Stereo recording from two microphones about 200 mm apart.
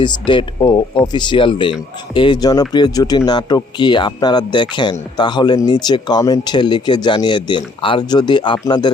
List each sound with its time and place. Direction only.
0.0 s speech: 25° left (ahead or behind)